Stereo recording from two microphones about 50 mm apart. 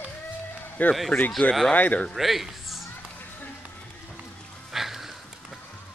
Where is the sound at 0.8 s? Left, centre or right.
Left.